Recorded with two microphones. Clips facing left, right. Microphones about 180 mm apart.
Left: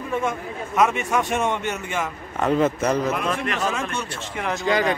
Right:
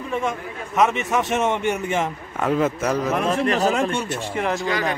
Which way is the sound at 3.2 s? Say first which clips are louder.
Right 5 dB; 35° right (ahead or behind).